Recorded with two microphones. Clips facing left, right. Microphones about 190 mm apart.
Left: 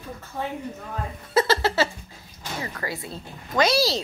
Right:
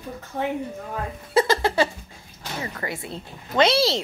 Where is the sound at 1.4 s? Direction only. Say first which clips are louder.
Right 1 dB; 15° right (ahead or behind).